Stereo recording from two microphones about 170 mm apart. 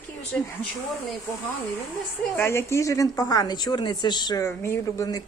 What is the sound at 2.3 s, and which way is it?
A woman's voice, 15° left (ahead or behind).